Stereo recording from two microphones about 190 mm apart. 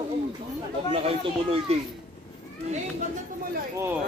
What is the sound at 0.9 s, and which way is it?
Speech, 30° right (ahead or behind).